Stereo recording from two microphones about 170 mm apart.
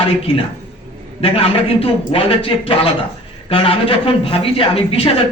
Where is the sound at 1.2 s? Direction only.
35° left (ahead or behind).